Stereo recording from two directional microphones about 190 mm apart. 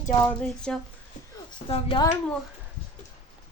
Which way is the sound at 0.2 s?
5° left (ahead or behind).